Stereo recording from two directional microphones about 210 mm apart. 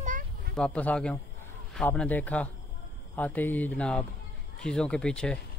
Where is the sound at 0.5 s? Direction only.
5° left (ahead or behind).